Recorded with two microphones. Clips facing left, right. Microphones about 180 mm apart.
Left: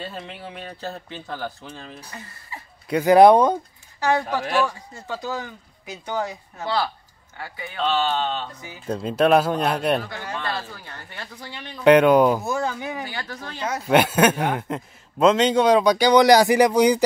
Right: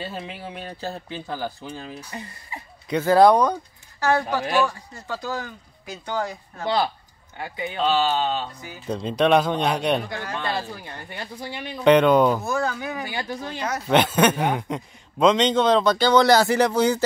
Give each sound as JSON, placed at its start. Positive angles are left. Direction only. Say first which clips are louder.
{"t": 0.0, "sound": "speech", "louder": "right 1 dB", "side_deg": -5}
{"t": 2.5, "sound": "a sound", "louder": "right 1 dB", "side_deg": -15}
{"t": 2.9, "sound": "speech", "louder": "left 3 dB", "side_deg": 15}
{"t": 4.2, "sound": "speech", "louder": "right 1 dB", "side_deg": 0}
{"t": 5.0, "sound": "a man's voice", "louder": "even", "side_deg": 15}
{"t": 6.6, "sound": "speech", "louder": "right 2 dB", "side_deg": -20}
{"t": 7.8, "sound": "speech", "louder": "right 1 dB", "side_deg": -5}
{"t": 10.4, "sound": "speech", "louder": "right 2 dB", "side_deg": -15}
{"t": 11.8, "sound": "a man's voice", "louder": "left 2 dB", "side_deg": 10}
{"t": 12.4, "sound": "speech", "louder": "even", "side_deg": 20}
{"t": 13.0, "sound": "speech", "louder": "right 3 dB", "side_deg": -15}
{"t": 13.7, "sound": "a man's voice", "louder": "left 2 dB", "side_deg": 5}